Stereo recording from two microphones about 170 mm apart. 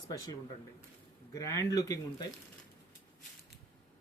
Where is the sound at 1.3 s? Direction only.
20° left (ahead or behind).